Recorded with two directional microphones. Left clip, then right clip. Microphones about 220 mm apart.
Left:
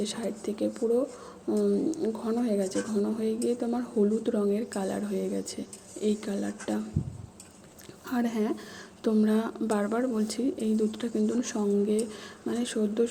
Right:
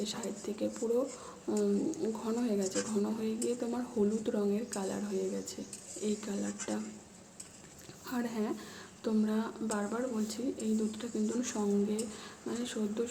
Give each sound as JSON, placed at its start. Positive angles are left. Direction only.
{"t": 0.0, "sound": "speech", "side_deg": 20}
{"t": 8.0, "sound": "speech", "side_deg": 20}